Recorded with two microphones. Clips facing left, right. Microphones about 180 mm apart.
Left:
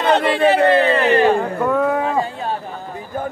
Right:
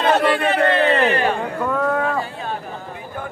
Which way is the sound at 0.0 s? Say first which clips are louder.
Left 2 dB; 20° left (ahead or behind).